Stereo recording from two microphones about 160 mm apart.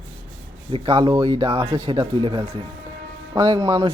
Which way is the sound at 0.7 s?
35° right (ahead or behind).